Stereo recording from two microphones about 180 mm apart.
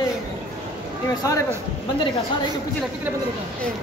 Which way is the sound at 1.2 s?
20° left (ahead or behind).